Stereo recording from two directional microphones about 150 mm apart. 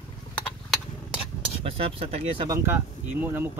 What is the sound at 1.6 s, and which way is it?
Speech, 40° right (ahead or behind).